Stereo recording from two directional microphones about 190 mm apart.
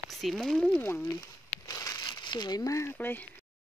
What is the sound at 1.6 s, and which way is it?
Crumpling, 20° left (ahead or behind).